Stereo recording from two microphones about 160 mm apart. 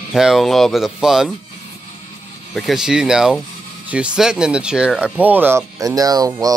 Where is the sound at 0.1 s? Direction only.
Centre (ahead or behind).